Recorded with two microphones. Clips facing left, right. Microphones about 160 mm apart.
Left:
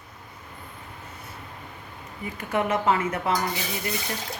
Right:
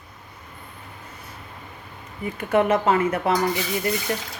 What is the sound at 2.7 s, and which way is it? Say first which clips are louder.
Speech: right 4 dB; 60° right (ahead or behind).